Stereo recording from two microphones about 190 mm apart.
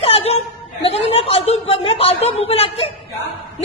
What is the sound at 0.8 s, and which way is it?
A woman's voice, 30° left (ahead or behind).